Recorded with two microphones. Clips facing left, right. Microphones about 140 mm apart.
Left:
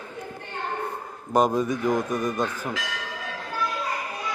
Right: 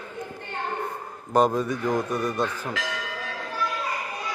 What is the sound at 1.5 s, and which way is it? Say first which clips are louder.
Speech: left 2 dB; 20° left (ahead or behind).